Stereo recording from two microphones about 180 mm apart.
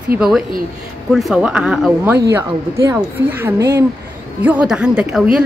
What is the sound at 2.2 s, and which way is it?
Speech, 15° right (ahead or behind).